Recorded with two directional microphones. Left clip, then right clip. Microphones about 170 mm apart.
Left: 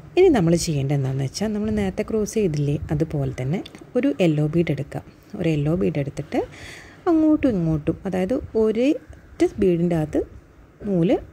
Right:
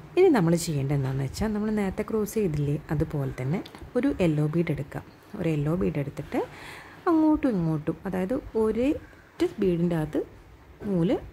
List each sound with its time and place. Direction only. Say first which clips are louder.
0.1 s speech: left 4 dB; 15° left (ahead or behind)
7.8 s a woman's voice: left 6 dB; 20° left (ahead or behind)